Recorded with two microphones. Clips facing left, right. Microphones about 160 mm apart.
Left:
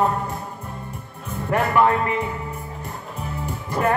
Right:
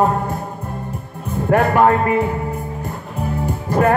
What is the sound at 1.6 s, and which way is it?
Speech, 45° right (ahead or behind).